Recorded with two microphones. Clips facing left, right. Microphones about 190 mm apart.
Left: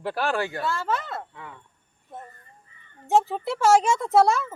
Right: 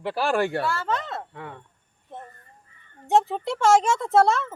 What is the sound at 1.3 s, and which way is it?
Speech, 55° right (ahead or behind).